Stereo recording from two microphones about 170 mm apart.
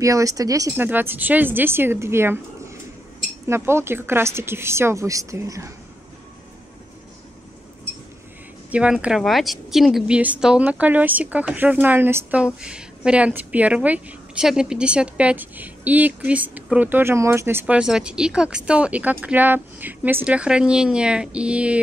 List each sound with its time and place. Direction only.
0.0 s a woman's voice: 20° right (ahead or behind)
3.4 s a woman's voice: 15° right (ahead or behind)
8.7 s a woman's voice: 5° right (ahead or behind)